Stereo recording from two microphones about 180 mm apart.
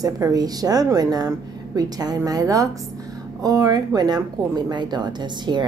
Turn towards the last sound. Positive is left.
turn(degrees=-25)  # may be behind; listen again after turning